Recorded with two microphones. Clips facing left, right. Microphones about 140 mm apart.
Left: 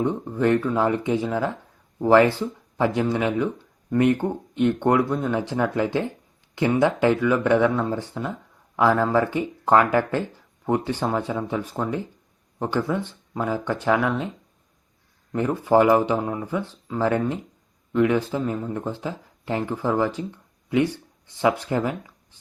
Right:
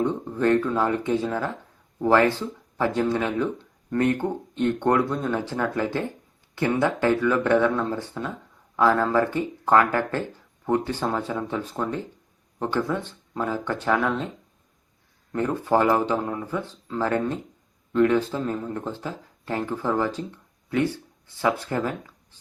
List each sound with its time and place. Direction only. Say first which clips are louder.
0.0 s speech: left 1 dB; 15° left (ahead or behind)
15.3 s speech: left 2 dB; 10° left (ahead or behind)